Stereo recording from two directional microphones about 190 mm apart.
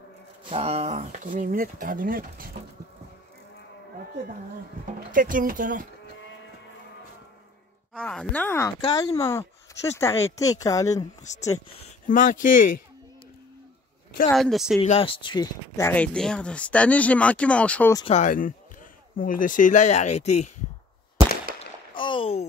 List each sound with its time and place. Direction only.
0.5 s speech: 30° right (ahead or behind); by 2.5 s 50° right (ahead or behind)
5.1 s speech: 45° right (ahead or behind)
7.9 s speech: 5° left (ahead or behind)
11.3 s speech: 40° left (ahead or behind)
14.3 s speech: centre (ahead or behind)
14.8 s speech: 30° left (ahead or behind)
15.9 s speech: 5° left (ahead or behind)
18.1 s speech: 45° left (ahead or behind)
21.9 s a sound: 25° left (ahead or behind)